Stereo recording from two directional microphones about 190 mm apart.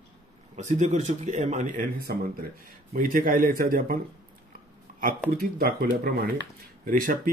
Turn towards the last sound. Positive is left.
turn(degrees=-50)  # may be behind; listen again after turning